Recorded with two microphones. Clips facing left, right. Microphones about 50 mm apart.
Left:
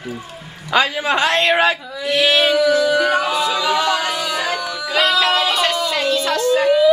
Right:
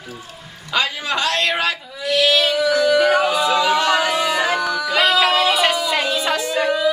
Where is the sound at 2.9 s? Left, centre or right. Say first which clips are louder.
Right 1 dB; centre.